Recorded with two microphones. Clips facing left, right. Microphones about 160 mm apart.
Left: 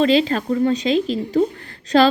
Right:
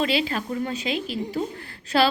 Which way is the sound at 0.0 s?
35° left (ahead or behind).